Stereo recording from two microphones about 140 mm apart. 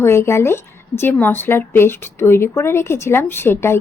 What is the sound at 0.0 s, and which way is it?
A woman's voice, 20° left (ahead or behind).